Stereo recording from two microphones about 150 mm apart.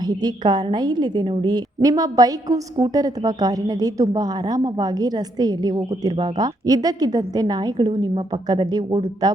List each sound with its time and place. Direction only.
0.0 s a woman's voice: 25° right (ahead or behind)